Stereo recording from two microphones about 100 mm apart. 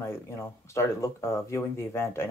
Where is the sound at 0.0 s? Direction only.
25° left (ahead or behind).